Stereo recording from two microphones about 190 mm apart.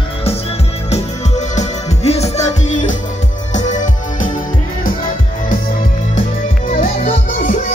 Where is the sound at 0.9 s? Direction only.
35° left (ahead or behind).